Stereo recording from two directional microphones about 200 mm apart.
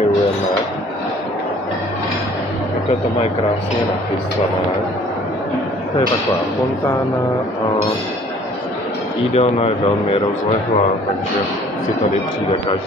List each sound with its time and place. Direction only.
9.3 s speech: 30° left (ahead or behind)